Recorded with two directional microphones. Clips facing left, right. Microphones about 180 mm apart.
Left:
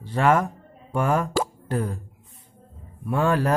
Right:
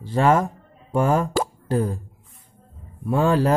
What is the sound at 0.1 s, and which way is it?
Speech, 30° right (ahead or behind).